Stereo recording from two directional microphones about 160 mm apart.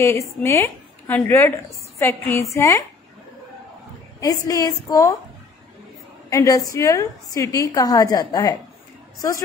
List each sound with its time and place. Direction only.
0.0 s a woman's voice: 20° left (ahead or behind)
4.2 s a woman's voice: 20° left (ahead or behind)
6.3 s a woman's voice: 20° left (ahead or behind)